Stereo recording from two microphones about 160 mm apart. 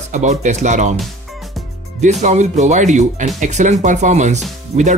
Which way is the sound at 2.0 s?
45° right (ahead or behind).